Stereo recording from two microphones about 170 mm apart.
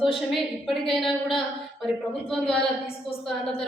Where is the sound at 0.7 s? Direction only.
Centre (ahead or behind).